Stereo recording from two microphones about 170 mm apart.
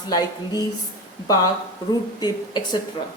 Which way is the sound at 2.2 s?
25° left (ahead or behind).